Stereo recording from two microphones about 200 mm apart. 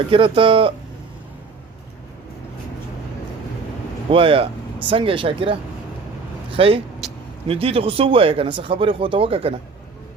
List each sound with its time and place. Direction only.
0.1 s speech: 25° right (ahead or behind)
4.1 s speech: 25° right (ahead or behind)
7.0 s vehicle: centre (ahead or behind)
7.4 s speech: 30° right (ahead or behind)